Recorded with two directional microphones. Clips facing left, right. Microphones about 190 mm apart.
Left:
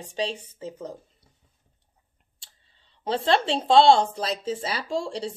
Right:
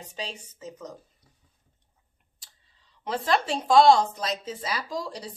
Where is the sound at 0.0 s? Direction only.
30° left (ahead or behind).